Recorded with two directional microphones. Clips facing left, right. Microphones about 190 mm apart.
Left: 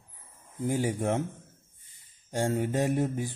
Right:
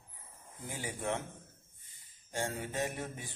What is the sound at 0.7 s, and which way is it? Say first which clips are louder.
Speech: left 14 dB; 40° left (ahead or behind).